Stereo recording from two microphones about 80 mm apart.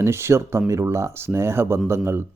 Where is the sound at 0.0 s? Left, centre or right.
Right.